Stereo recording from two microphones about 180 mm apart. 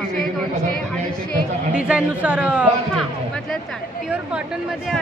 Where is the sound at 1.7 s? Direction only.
5° right (ahead or behind).